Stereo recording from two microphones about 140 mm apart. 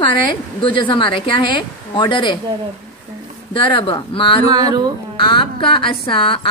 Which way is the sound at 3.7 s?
35° left (ahead or behind).